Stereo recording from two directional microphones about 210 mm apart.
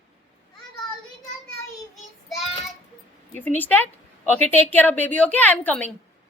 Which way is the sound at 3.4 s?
10° left (ahead or behind).